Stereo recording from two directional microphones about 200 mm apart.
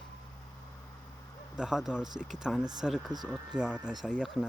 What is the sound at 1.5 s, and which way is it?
Speech, 5° right (ahead or behind).